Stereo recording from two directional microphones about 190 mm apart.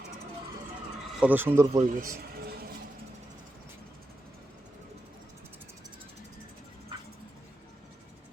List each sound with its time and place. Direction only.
1.2 s speech: 10° right (ahead or behind)
1.9 s a man's voice: 45° right (ahead or behind)